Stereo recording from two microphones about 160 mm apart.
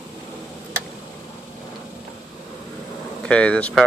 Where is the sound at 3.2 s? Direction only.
5° left (ahead or behind).